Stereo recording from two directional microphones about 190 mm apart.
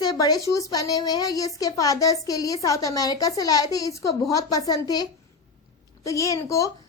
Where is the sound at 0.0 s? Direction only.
20° left (ahead or behind).